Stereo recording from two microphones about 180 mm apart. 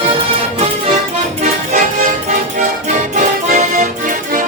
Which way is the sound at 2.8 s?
45° right (ahead or behind).